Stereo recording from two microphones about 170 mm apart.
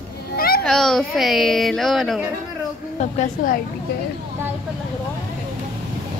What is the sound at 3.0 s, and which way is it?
Speech, 45° left (ahead or behind).